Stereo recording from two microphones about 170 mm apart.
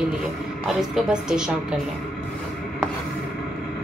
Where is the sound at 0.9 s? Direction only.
5° right (ahead or behind).